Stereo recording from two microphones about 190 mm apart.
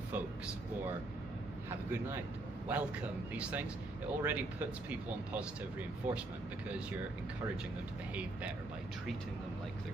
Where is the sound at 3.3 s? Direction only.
5° right (ahead or behind).